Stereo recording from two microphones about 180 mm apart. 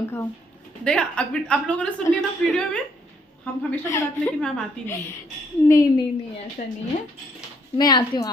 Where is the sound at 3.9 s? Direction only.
15° left (ahead or behind).